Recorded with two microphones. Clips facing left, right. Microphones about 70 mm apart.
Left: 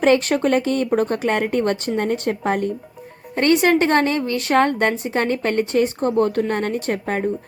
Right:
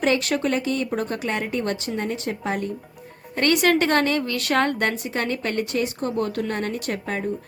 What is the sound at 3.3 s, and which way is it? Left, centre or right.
A woman's voice, left.